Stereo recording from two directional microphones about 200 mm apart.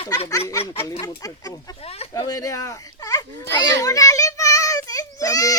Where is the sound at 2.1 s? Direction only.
20° left (ahead or behind).